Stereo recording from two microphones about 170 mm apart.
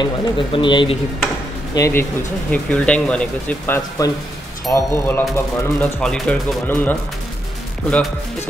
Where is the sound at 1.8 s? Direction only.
15° left (ahead or behind).